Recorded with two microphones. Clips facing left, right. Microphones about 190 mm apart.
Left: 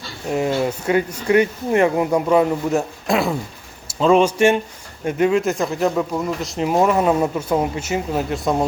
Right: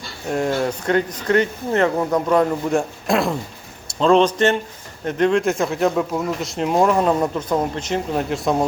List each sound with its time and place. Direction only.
0.3 s speech: 5° left (ahead or behind)